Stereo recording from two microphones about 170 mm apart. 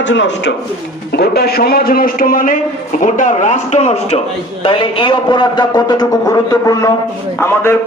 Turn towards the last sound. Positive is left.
turn(degrees=15)  # may be behind; listen again after turning